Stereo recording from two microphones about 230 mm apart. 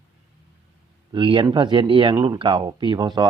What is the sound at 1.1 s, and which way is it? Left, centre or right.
Speech, right.